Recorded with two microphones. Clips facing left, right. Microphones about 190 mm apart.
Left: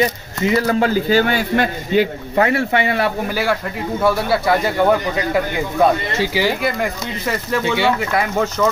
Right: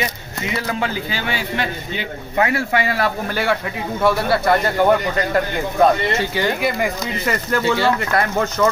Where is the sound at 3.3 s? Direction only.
Centre (ahead or behind).